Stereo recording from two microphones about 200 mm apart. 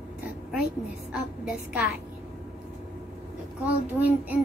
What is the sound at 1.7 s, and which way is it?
Speech, 5° right (ahead or behind).